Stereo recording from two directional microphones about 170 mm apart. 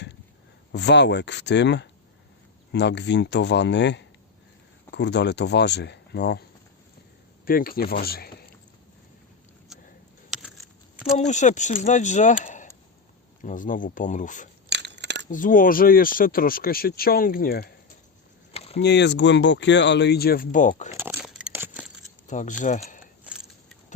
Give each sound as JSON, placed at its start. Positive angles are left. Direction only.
{"t": 0.7, "sound": "speech", "side_deg": 90}
{"t": 7.4, "sound": "speech", "side_deg": 60}
{"t": 10.3, "sound": "keys jangling", "side_deg": 0}
{"t": 11.2, "sound": "speech", "side_deg": 45}
{"t": 14.7, "sound": "coin", "side_deg": -90}
{"t": 15.3, "sound": "speech", "side_deg": 50}
{"t": 18.5, "sound": "a sound", "side_deg": 35}
{"t": 18.8, "sound": "speech", "side_deg": 90}
{"t": 20.9, "sound": "a sound", "side_deg": -10}
{"t": 22.3, "sound": "speech", "side_deg": 45}